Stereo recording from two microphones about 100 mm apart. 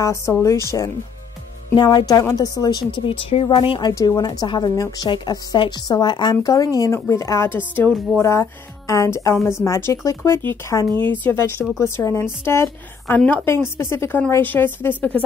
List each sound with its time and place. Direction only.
0.0 s a woman's voice: 30° left (ahead or behind)
1.8 s speech: 40° left (ahead or behind); by 3.8 s 60° left (ahead or behind)
3.9 s a woman's voice: 30° left (ahead or behind)
4.2 s speech: 45° left (ahead or behind)
4.7 s a woman's voice: 35° left (ahead or behind)
5.0 s speech: 45° left (ahead or behind)
6.5 s a woman's voice: 35° left (ahead or behind); by 7.9 s 20° left (ahead or behind)
8.2 s a woman's voice: 30° left (ahead or behind)